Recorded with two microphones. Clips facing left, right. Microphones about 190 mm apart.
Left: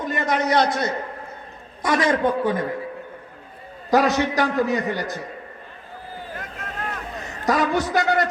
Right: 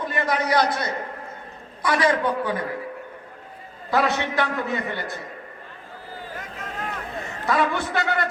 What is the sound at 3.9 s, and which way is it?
A man's voice, 40° left (ahead or behind).